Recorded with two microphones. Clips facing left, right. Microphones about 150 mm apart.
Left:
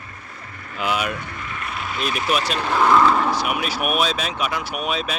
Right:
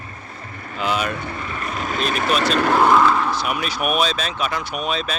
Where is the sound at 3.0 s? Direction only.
Centre (ahead or behind).